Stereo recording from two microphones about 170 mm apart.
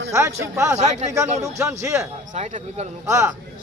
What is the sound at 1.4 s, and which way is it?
Speech, 15° right (ahead or behind).